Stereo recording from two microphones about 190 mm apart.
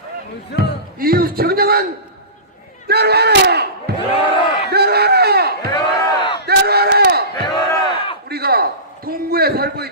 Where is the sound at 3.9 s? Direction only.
55° right (ahead or behind).